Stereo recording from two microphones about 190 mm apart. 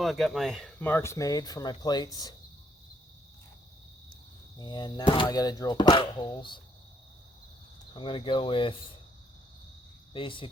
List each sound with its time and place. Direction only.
0.0 s speech: centre (ahead or behind); by 2.3 s 20° left (ahead or behind)
4.5 s speech: 20° left (ahead or behind)
7.9 s speech: 25° left (ahead or behind)
10.1 s speech: 25° left (ahead or behind)